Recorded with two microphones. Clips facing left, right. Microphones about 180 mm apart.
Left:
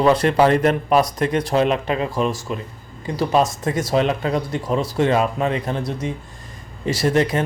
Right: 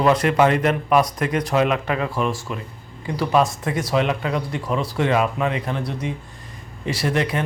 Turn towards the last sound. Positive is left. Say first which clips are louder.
# left 4 dB
turn(degrees=45)  # may be behind; listen again after turning